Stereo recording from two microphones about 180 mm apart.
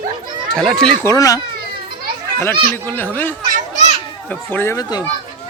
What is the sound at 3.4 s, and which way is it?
Children playing, 45° right (ahead or behind).